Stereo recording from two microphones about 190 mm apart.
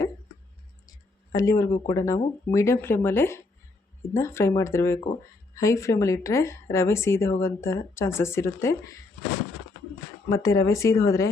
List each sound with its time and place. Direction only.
1.3 s a woman's voice: 20° left (ahead or behind)
10.2 s a woman's voice: 15° left (ahead or behind)